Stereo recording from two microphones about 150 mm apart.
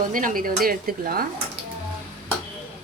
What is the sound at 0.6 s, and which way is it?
Speech, 80° right.